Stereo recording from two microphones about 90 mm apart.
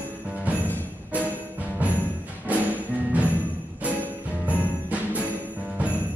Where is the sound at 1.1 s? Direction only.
20° right (ahead or behind).